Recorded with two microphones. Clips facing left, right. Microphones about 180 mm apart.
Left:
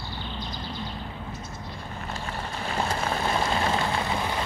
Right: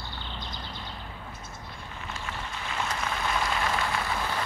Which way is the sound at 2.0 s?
35° left (ahead or behind).